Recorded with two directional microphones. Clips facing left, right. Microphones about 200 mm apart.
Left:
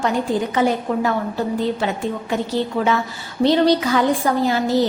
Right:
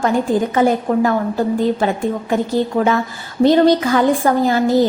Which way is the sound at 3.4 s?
45° right (ahead or behind).